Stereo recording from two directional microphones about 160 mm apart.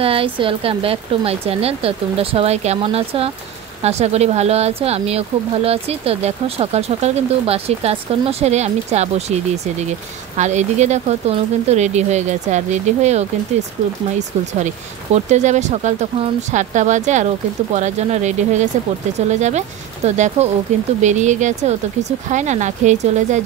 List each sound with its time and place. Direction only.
0.0 s speech: 35° right (ahead or behind)
15.1 s speech: 45° right (ahead or behind)
20.1 s speech: 45° right (ahead or behind)